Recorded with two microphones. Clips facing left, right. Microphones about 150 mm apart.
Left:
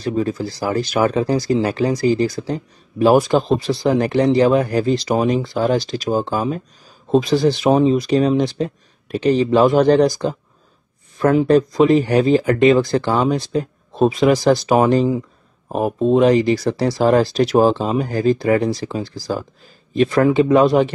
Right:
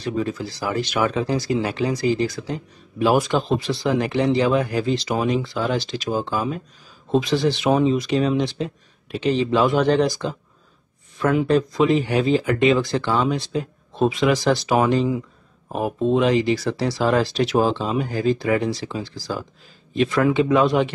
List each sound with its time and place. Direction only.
0.0 s speech: 40° left (ahead or behind)